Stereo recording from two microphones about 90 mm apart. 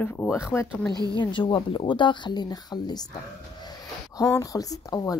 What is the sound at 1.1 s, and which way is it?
Speech, 60° left (ahead or behind).